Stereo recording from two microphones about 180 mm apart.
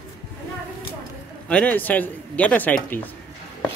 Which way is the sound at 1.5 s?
10° left (ahead or behind).